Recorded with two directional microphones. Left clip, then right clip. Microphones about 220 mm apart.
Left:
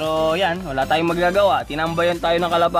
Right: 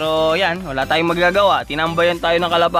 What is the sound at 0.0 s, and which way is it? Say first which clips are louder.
Speech: right 3 dB; 40° right (ahead or behind).